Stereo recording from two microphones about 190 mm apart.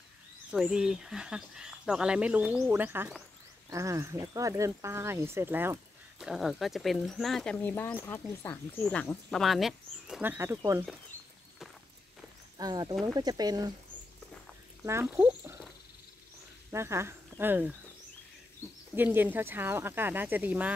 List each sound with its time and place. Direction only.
0.5 s speech: 5° right (ahead or behind)
12.5 s speech: 20° right (ahead or behind)
14.9 s speech: 15° right (ahead or behind)
16.7 s speech: 15° right (ahead or behind)
19.1 s speech: 10° right (ahead or behind)